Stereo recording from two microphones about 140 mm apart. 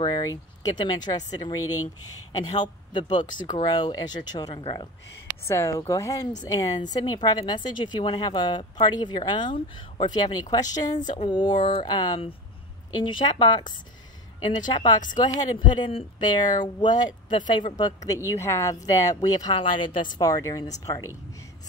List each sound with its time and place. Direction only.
0.0 s a woman's voice: 25° left (ahead or behind)
2.5 s a woman's voice: 35° left (ahead or behind)